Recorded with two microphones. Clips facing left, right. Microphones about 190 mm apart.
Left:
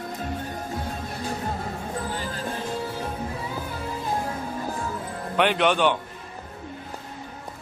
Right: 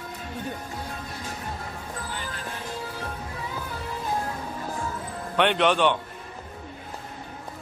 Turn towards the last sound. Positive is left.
turn(degrees=0)  # may be behind; listen again after turning